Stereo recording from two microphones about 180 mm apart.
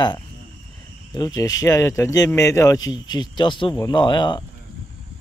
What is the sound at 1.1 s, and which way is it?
Speech, 20° left (ahead or behind).